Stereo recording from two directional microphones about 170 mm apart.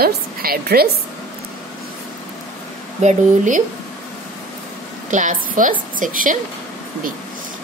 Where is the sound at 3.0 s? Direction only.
45° right (ahead or behind).